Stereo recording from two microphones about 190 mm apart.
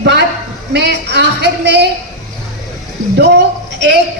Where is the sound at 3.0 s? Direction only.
40° right (ahead or behind).